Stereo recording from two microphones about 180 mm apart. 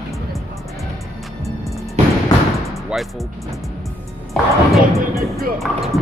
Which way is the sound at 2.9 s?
5° right (ahead or behind).